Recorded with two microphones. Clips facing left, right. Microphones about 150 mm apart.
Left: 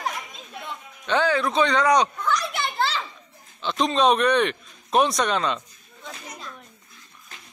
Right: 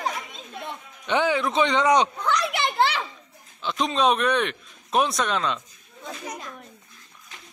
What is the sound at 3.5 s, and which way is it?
A man's voice, 5° right (ahead or behind).